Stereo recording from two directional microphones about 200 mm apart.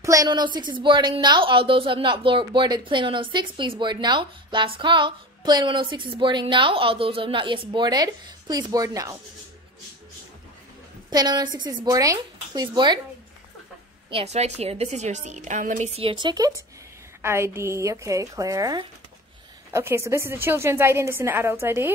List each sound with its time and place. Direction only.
0.0 s speech: 15° right (ahead or behind)
11.1 s speech: 20° right (ahead or behind)
14.1 s a woman's voice: 30° right (ahead or behind); by 21.9 s 10° right (ahead or behind)